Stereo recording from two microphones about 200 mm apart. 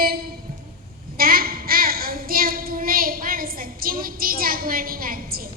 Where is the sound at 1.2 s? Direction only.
45° right (ahead or behind).